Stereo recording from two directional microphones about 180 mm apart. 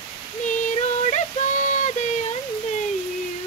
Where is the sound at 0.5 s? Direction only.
45° left (ahead or behind).